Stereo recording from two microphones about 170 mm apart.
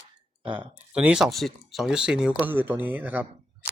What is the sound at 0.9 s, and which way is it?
Speech, 5° right (ahead or behind).